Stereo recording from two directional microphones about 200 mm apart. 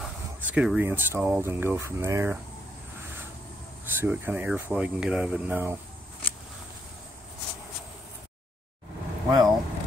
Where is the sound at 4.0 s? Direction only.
10° right (ahead or behind).